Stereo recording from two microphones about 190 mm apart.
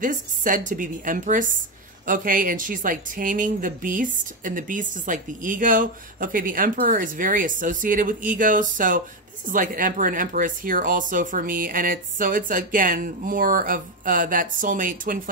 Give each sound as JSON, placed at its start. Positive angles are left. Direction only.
{"t": 0.0, "sound": "speech", "side_deg": -45}